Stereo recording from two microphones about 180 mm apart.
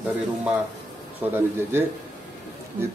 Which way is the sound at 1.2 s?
15° right (ahead or behind).